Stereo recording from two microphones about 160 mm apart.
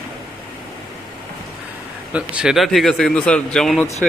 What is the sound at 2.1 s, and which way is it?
Speech, 5° right (ahead or behind).